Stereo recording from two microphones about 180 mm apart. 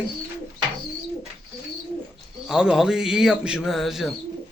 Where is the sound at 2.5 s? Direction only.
5° right (ahead or behind).